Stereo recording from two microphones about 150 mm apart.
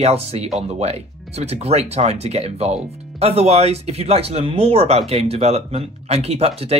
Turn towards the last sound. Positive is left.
turn(degrees=-45)  # may be behind; listen again after turning